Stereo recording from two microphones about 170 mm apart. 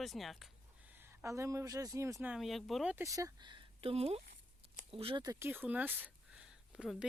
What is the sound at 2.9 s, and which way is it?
Speech, 20° right (ahead or behind).